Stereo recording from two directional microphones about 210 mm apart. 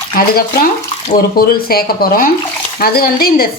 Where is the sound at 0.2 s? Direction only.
45° left (ahead or behind).